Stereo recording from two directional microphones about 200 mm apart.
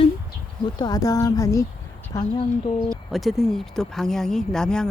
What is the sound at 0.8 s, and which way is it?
Speech, 20° left (ahead or behind).